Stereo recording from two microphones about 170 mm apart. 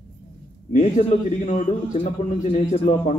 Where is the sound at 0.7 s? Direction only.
45° left (ahead or behind).